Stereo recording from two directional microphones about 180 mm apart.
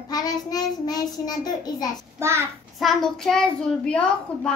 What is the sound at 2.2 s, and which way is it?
Speech, 15° right (ahead or behind).